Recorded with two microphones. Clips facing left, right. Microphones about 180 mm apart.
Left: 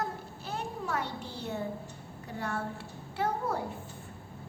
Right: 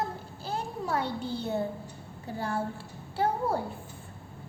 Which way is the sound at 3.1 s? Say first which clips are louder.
Right 4 dB; 30° right (ahead or behind).